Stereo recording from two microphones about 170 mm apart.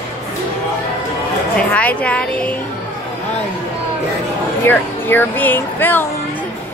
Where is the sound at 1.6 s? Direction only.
10° left (ahead or behind).